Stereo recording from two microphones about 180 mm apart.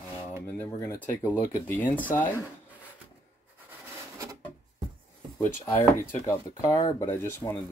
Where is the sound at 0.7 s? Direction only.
15° left (ahead or behind).